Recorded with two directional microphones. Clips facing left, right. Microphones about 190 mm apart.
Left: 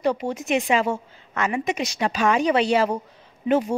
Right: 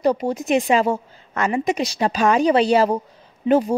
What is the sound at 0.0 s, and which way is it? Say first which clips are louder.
A woman's voice: right 4 dB; 35° right (ahead or behind).